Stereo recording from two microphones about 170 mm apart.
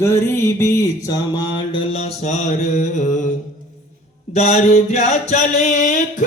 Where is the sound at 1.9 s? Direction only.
40° left (ahead or behind).